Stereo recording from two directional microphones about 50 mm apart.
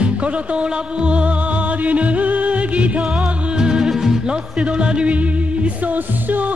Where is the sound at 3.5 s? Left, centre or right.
Centre.